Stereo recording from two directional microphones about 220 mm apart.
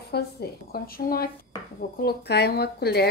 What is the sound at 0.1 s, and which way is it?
Speech, 45° left (ahead or behind).